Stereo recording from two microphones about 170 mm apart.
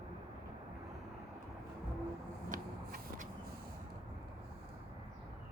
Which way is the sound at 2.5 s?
50° right (ahead or behind).